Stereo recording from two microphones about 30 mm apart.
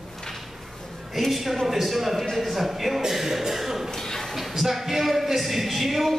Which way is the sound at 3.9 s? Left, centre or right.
Centre.